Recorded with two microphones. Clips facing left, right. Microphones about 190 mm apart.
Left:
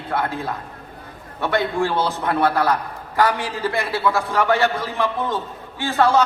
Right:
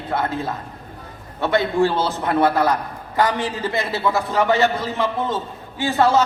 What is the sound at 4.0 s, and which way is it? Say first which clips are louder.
A man's voice: right 1 dB; 20° right (ahead or behind).